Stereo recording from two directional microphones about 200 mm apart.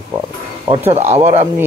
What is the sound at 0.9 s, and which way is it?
Speech, 30° right (ahead or behind).